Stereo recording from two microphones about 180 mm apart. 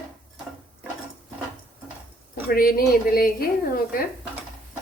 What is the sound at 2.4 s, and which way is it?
Speech, 55° left (ahead or behind).